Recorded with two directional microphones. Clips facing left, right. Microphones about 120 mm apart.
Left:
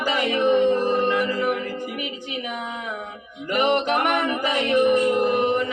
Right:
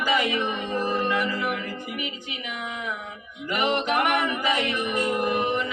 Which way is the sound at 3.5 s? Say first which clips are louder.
Left 4 dB; 45° left (ahead or behind).